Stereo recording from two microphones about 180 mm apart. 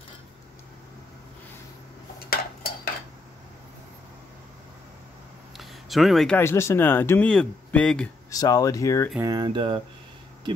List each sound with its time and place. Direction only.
2.1 s dishes: 55° left (ahead or behind)
5.6 s speech: centre (ahead or behind)
8.3 s speech: 20° left (ahead or behind)
9.2 s a sound: 20° right (ahead or behind)